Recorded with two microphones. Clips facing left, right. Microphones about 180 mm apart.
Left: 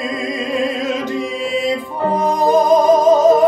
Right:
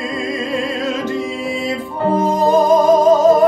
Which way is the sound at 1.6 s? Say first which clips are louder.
Even; 15° left (ahead or behind).